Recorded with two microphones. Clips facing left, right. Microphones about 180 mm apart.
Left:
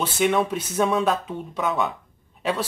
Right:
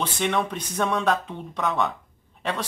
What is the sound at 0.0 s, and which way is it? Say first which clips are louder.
Speech: left 4 dB; 5° left (ahead or behind).